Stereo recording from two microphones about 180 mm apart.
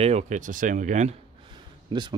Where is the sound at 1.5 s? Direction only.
25° right (ahead or behind).